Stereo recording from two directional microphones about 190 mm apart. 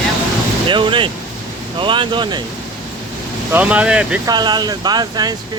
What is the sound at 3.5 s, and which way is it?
Speech, 10° right (ahead or behind).